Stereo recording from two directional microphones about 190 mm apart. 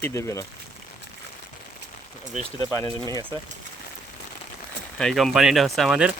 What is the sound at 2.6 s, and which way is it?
Speech, 20° left (ahead or behind).